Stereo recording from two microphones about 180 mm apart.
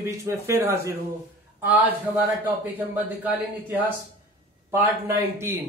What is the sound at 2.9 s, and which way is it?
Speech, 10° right (ahead or behind).